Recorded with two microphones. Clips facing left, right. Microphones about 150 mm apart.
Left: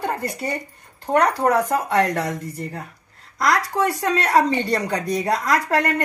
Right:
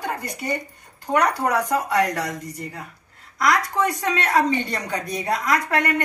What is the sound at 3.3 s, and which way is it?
Speech, 30° left (ahead or behind).